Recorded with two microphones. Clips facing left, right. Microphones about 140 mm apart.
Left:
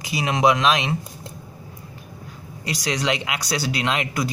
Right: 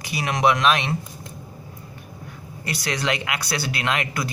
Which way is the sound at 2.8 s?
15° left (ahead or behind).